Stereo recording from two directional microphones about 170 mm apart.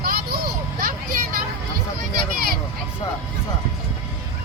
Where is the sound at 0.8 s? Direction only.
55° right (ahead or behind).